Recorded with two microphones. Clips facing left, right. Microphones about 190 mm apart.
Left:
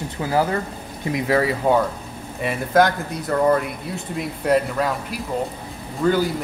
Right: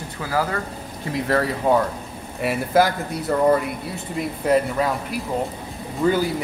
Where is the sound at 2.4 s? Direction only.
5° right (ahead or behind).